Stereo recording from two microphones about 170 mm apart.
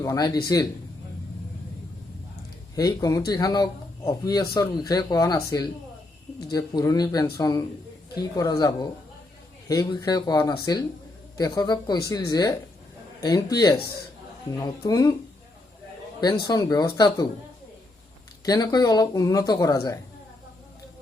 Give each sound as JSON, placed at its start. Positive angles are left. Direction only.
{"t": 0.0, "sound": "speech", "side_deg": 20}
{"t": 2.7, "sound": "speech", "side_deg": 20}
{"t": 16.4, "sound": "speech", "side_deg": 20}
{"t": 18.4, "sound": "speech", "side_deg": 20}